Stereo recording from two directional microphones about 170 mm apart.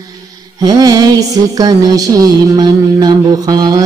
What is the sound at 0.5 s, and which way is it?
Mantra, 25° right (ahead or behind).